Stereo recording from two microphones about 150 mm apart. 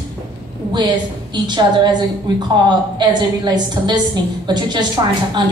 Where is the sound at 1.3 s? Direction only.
30° right (ahead or behind).